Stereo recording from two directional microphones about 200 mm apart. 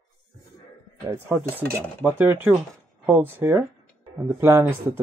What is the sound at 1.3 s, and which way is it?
Dishes, 5° left (ahead or behind).